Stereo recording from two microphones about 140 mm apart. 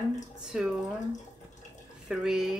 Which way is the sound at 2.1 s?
5° right (ahead or behind).